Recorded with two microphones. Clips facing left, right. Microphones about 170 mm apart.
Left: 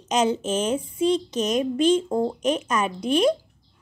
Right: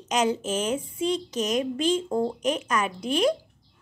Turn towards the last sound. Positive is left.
turn(degrees=20)  # may be behind; listen again after turning